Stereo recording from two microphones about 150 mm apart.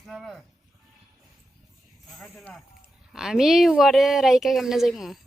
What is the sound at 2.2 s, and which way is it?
Speech, 5° left (ahead or behind).